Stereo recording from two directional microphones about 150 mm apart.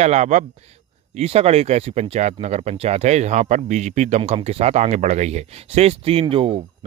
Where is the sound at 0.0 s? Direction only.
50° right (ahead or behind).